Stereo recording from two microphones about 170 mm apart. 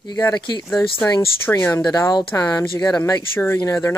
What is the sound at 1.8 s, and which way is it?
Speech, 25° left (ahead or behind).